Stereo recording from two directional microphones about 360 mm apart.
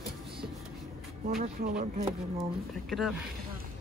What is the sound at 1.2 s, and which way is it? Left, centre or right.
Speech, right.